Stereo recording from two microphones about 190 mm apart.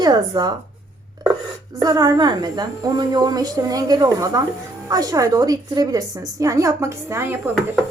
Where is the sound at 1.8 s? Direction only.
20° right (ahead or behind).